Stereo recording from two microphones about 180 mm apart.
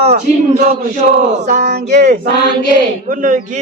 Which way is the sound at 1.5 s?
40° right (ahead or behind).